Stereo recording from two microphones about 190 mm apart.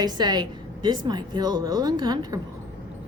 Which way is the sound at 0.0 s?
20° right (ahead or behind).